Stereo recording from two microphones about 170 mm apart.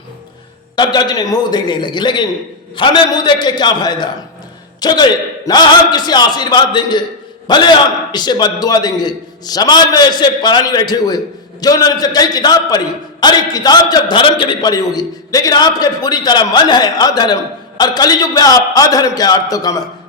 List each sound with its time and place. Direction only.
0.8 s a man's voice: 25° left (ahead or behind)